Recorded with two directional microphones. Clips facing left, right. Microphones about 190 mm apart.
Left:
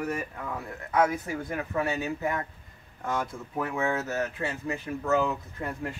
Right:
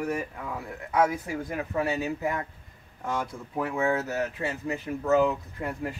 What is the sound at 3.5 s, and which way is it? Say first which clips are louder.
Speech: right 3 dB; 15° right (ahead or behind).